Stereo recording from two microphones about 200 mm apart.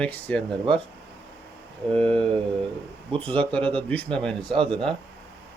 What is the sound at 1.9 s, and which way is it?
Speech, 5° left (ahead or behind).